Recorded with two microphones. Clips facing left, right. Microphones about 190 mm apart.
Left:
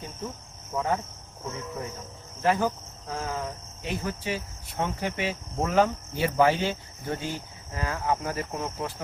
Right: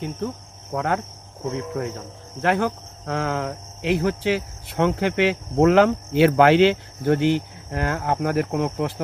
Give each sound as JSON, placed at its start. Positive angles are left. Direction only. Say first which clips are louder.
{"t": 0.8, "sound": "speech", "louder": "right 3 dB", "side_deg": -75}